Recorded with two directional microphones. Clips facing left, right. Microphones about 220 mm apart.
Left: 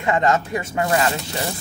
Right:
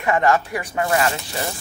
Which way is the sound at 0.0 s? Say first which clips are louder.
Right 1 dB; 20° left (ahead or behind).